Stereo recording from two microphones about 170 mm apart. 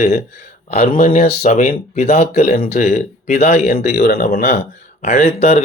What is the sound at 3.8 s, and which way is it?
Speech, 70° left (ahead or behind).